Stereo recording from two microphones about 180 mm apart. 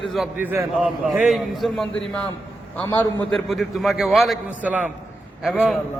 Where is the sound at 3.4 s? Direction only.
Centre (ahead or behind).